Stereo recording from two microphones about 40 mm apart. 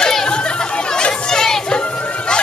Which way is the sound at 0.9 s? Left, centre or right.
Centre.